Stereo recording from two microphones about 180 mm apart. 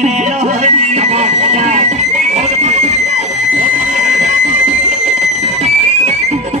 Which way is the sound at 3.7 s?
40° right (ahead or behind).